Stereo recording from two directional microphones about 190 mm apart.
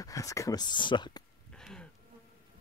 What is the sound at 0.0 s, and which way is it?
Speech, 15° left (ahead or behind).